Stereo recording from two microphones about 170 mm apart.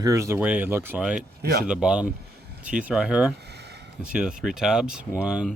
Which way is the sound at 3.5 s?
75° right (ahead or behind).